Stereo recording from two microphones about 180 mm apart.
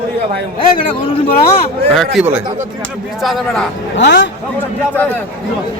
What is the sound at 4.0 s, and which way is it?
Speech, 75° left (ahead or behind).